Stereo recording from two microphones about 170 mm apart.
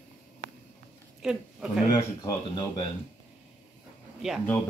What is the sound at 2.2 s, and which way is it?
Speech, 25° left (ahead or behind).